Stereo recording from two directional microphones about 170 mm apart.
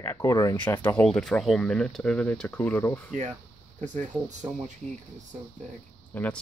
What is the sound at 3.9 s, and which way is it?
Speech, 45° right (ahead or behind).